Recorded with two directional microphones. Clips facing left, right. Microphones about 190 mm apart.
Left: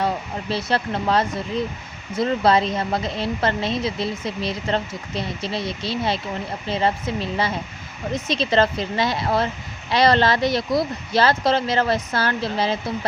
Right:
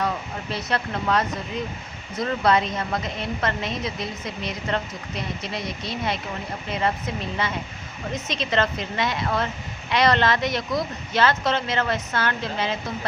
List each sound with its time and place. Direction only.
0.5 s a woman's voice: 30° left (ahead or behind)